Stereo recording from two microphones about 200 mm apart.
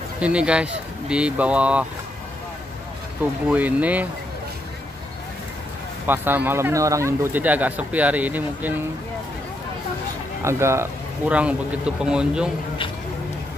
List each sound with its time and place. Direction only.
0.2 s speech: 5° right (ahead or behind)
3.4 s speech: 10° right (ahead or behind)
6.0 s speech: 10° right (ahead or behind)
10.4 s speech: 15° right (ahead or behind)